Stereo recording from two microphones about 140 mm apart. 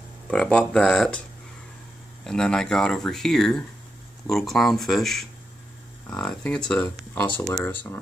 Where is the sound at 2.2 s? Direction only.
5° left (ahead or behind).